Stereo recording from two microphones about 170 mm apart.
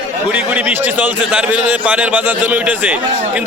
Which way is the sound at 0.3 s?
10° right (ahead or behind).